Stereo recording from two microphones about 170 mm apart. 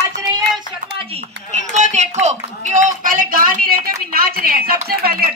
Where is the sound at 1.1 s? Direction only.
40° right (ahead or behind).